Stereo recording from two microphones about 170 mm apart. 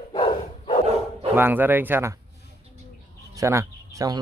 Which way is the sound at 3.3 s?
15° right (ahead or behind).